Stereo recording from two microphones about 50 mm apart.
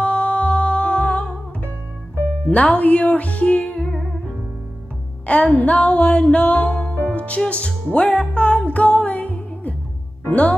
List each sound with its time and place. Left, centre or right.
0.0 s music: left
2.4 s music: left
3.9 s music: centre
5.2 s music: left